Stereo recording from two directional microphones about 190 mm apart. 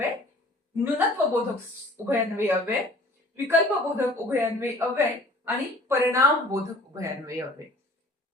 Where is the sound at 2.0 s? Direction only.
10° right (ahead or behind).